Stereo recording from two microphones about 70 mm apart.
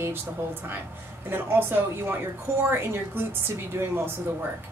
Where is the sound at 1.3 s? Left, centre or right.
Right.